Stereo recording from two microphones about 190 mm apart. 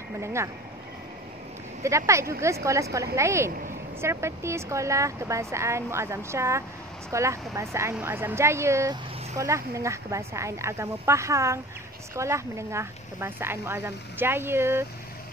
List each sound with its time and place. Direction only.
0.2 s speech: 15° right (ahead or behind)
1.8 s speech: 15° right (ahead or behind)